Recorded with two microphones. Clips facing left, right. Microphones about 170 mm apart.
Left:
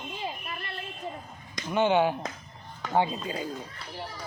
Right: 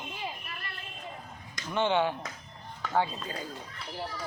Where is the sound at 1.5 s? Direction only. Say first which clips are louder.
Left 4 dB; 10° left (ahead or behind).